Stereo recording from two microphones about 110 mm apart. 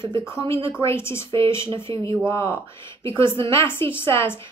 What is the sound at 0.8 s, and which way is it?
Speech, 25° left (ahead or behind).